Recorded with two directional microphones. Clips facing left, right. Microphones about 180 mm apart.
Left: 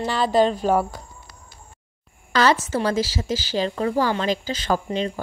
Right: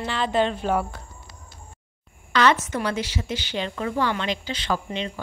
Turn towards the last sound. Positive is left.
turn(degrees=40)  # may be behind; listen again after turning